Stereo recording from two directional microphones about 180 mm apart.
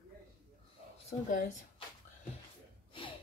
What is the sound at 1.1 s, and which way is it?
Speech, 45° left (ahead or behind).